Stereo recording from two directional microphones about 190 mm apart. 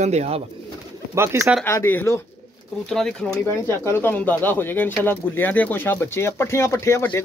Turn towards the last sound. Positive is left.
turn(degrees=10)  # may be behind; listen again after turning